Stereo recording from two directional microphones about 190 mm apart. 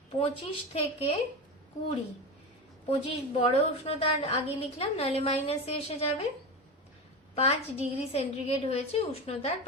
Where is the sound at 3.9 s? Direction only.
30° left (ahead or behind).